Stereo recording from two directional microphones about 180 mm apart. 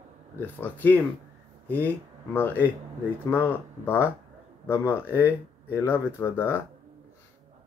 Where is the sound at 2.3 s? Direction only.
10° left (ahead or behind).